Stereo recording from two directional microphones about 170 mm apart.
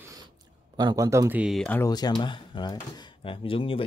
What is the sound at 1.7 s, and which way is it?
Speech, 20° left (ahead or behind).